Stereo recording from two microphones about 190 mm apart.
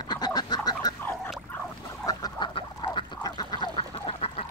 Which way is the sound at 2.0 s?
20° left (ahead or behind).